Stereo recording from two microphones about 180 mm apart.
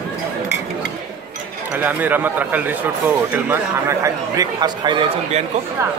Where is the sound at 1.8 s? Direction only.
10° right (ahead or behind).